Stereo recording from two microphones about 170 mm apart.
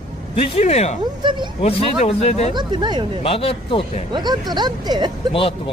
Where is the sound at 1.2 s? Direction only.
25° right (ahead or behind).